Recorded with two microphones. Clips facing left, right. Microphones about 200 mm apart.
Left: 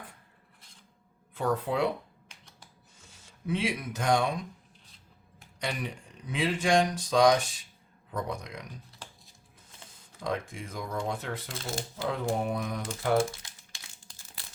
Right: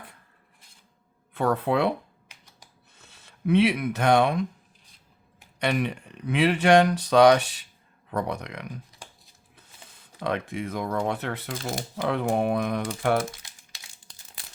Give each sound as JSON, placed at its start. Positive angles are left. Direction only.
{"t": 1.3, "sound": "speech", "side_deg": -65}
{"t": 3.0, "sound": "speech", "side_deg": -65}
{"t": 5.5, "sound": "speech", "side_deg": -65}